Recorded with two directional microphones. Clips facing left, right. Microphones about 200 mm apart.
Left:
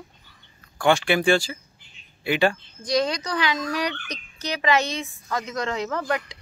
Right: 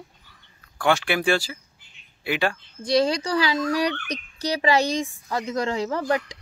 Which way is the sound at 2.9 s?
30° right (ahead or behind).